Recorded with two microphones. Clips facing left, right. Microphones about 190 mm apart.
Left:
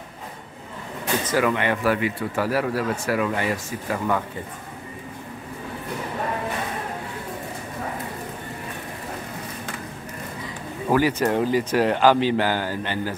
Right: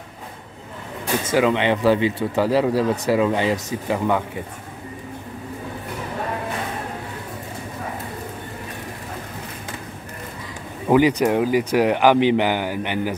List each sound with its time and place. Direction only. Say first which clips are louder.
1.2 s speech: right 4 dB; 20° right (ahead or behind)
10.9 s speech: right 4 dB; 15° right (ahead or behind)